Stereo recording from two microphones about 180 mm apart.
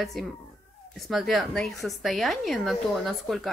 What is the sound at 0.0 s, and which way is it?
A woman's voice, centre (ahead or behind).